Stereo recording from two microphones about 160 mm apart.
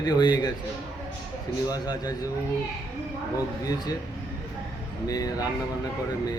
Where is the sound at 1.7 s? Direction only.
25° left (ahead or behind).